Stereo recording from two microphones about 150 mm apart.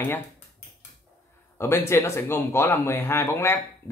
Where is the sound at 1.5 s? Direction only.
15° left (ahead or behind).